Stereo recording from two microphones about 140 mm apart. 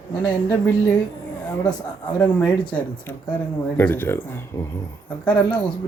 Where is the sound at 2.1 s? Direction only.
10° left (ahead or behind).